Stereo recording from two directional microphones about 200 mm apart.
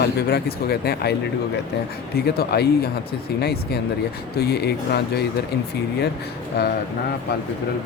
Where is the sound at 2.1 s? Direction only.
50° left (ahead or behind).